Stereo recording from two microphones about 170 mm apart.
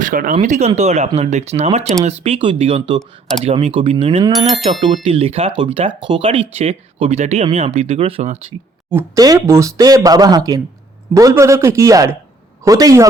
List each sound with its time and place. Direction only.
0.0 s speech: 50° right (ahead or behind); by 4.2 s 35° right (ahead or behind)
4.3 s bicycle bell: centre (ahead or behind)
5.0 s speech: 35° right (ahead or behind)
8.9 s a man's voice: 15° right (ahead or behind)